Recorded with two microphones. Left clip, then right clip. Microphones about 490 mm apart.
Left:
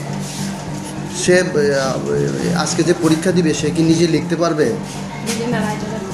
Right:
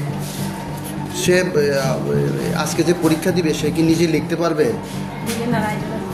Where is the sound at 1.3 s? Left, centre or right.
Right.